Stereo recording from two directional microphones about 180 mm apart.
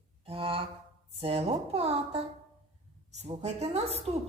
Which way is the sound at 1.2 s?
30° right (ahead or behind).